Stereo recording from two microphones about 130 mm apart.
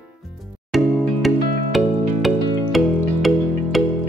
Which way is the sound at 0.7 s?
Centre (ahead or behind).